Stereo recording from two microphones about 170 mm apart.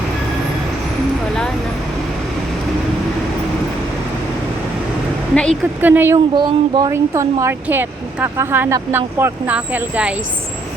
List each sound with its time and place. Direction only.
5.3 s a woman's voice: 5° left (ahead or behind)
5.8 s speech: 10° right (ahead or behind)
6.3 s speech: 25° right (ahead or behind); by 10.2 s 10° right (ahead or behind)